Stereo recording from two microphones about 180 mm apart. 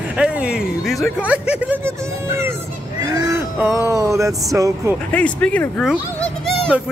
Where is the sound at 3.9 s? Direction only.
15° right (ahead or behind).